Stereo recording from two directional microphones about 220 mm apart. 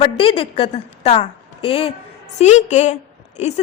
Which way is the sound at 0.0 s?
25° left (ahead or behind).